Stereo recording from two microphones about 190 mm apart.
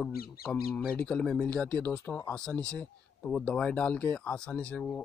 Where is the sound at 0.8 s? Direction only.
5° left (ahead or behind).